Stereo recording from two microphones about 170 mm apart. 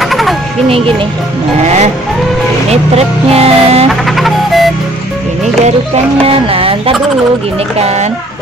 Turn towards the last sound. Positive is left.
turn(degrees=-35)  # may be behind; listen again after turning